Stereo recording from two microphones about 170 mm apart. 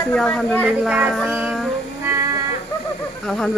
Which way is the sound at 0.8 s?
5° right (ahead or behind).